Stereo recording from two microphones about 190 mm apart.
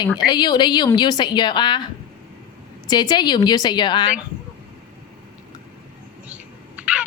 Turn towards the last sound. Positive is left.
turn(degrees=-5)  # may be behind; listen again after turning